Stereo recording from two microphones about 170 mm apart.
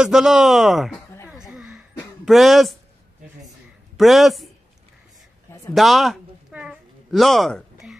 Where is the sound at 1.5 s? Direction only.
5° right (ahead or behind).